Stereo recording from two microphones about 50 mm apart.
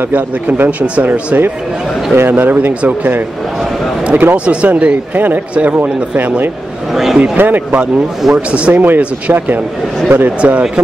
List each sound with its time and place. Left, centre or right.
0.1 s speech: right
2.1 s speech: right
4.5 s a man's voice: right
5.1 s a man's voice: right
6.9 s a man's voice: centre
7.3 s speech: right
8.4 s a man's voice: right
8.7 s speech: right
10.4 s a man's voice: right